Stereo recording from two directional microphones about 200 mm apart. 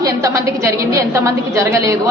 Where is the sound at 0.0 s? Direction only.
15° right (ahead or behind).